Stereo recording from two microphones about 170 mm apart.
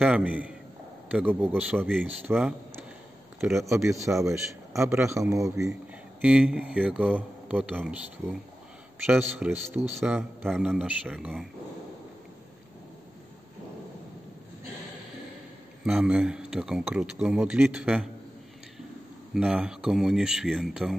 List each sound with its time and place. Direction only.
0.0 s a man's voice: 10° right (ahead or behind)
3.9 s speech: 15° right (ahead or behind)
6.2 s speech: 5° right (ahead or behind)
15.8 s a man's voice: 5° right (ahead or behind)
19.3 s a man's voice: 5° right (ahead or behind)